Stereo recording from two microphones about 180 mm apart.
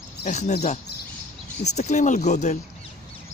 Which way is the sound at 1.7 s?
40° left (ahead or behind).